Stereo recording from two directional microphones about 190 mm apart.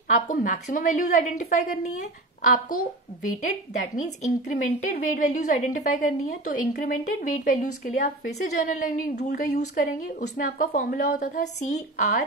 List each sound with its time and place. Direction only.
0.1 s a woman's voice: 40° left (ahead or behind)
3.9 s a woman's voice: 40° left (ahead or behind)